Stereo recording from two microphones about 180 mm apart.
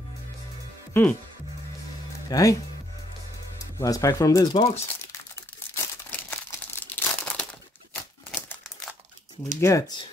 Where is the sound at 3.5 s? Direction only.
20° left (ahead or behind).